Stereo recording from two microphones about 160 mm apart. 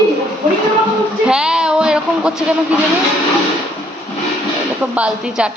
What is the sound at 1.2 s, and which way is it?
A woman's voice, 5° right (ahead or behind).